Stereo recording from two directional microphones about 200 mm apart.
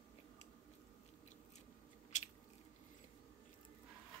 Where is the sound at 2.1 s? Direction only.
35° left (ahead or behind).